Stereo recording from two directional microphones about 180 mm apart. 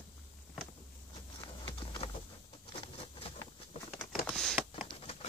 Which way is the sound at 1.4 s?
25° left (ahead or behind).